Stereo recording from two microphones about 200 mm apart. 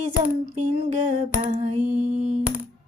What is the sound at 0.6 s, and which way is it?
Speech, 40° right (ahead or behind).